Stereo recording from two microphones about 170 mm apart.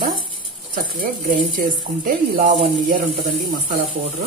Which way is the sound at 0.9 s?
55° right (ahead or behind).